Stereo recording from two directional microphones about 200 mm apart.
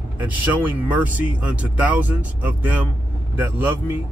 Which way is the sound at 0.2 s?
10° right (ahead or behind).